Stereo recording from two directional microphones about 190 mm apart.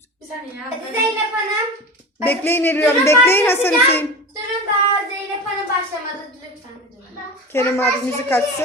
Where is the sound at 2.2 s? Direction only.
10° left (ahead or behind).